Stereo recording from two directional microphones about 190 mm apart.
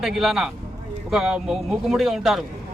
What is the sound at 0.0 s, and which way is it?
A man's voice, centre (ahead or behind).